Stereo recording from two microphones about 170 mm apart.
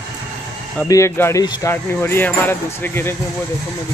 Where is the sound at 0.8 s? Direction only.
15° left (ahead or behind).